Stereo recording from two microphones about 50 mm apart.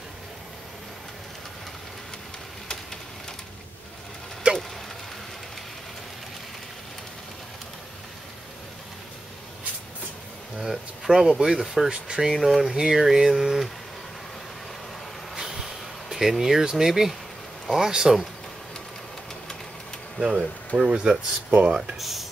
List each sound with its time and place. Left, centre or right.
4.4 s a sound: right
10.6 s speech: centre
12.4 s speech: centre
15.3 s a sound: centre
17.6 s speech: centre
20.2 s speech: centre
21.9 s speech: centre